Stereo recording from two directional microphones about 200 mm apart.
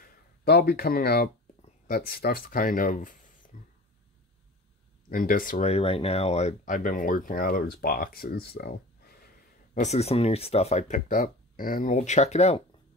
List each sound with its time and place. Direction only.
0.0 s speech: 50° left (ahead or behind)
3.5 s a sound: 40° left (ahead or behind)
5.1 s speech: 45° left (ahead or behind)
9.8 s speech: 35° left (ahead or behind)